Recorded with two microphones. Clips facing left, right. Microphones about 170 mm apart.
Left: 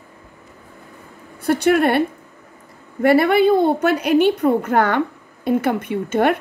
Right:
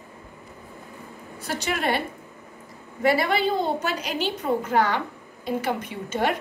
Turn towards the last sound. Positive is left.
turn(degrees=55)  # may be behind; listen again after turning